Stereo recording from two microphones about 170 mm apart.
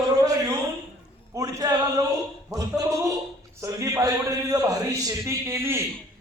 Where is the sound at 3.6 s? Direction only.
20° right (ahead or behind).